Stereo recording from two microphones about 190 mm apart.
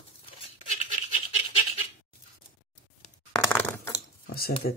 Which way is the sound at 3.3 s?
10° left (ahead or behind).